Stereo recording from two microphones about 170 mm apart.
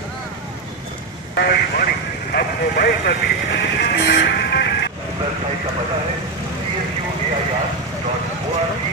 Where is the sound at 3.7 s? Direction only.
80° left.